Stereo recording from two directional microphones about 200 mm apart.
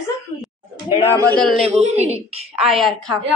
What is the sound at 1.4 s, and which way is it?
Speech, centre (ahead or behind).